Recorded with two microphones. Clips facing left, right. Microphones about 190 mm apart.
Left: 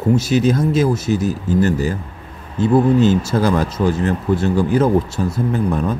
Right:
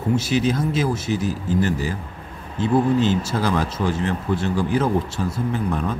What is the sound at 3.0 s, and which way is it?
Speech, 45° left (ahead or behind).